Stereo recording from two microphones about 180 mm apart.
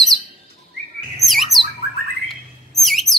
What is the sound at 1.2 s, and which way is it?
Bird, centre (ahead or behind).